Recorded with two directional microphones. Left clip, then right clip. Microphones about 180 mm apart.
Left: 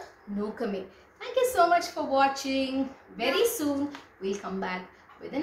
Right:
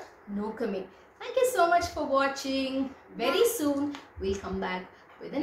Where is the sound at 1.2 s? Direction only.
10° left (ahead or behind).